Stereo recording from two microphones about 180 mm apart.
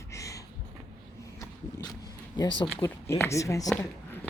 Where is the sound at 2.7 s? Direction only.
15° left (ahead or behind).